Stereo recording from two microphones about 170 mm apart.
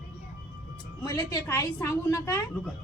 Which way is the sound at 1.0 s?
20° left (ahead or behind).